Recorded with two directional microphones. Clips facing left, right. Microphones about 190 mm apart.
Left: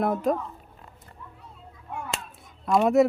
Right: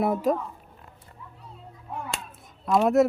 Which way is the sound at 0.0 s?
5° right (ahead or behind).